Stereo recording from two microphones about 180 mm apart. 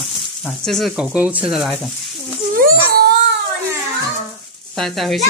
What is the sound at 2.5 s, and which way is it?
Baby cry, 55° right (ahead or behind).